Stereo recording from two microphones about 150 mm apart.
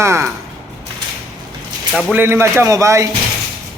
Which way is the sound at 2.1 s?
15° right (ahead or behind).